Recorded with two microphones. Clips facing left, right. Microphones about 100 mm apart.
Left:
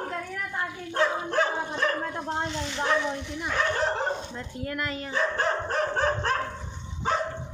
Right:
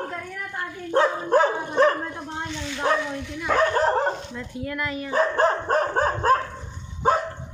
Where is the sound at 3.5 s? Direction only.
45° right (ahead or behind).